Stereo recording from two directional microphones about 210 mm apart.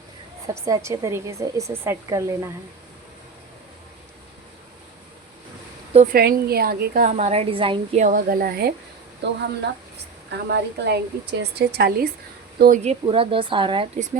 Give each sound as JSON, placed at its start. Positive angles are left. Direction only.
{"t": 0.4, "sound": "a woman's voice", "side_deg": -15}
{"t": 5.9, "sound": "speech", "side_deg": -30}
{"t": 6.1, "sound": "a woman's voice", "side_deg": -45}
{"t": 7.2, "sound": "a woman's voice", "side_deg": -30}